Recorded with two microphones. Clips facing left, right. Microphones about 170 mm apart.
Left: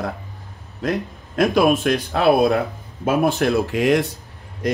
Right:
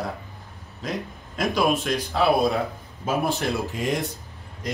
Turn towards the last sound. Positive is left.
turn(degrees=75)  # may be behind; listen again after turning